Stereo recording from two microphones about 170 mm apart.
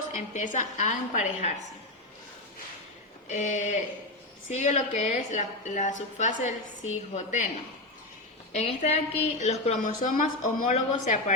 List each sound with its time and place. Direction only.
0.1 s a woman's voice: 45° left (ahead or behind)
3.2 s a woman's voice: 45° left (ahead or behind)
8.5 s a woman's voice: 40° left (ahead or behind)